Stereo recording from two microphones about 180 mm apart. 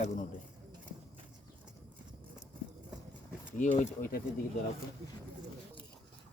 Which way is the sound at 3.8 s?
50° left (ahead or behind).